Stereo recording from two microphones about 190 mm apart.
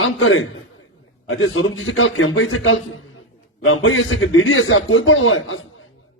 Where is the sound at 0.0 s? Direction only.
90° left.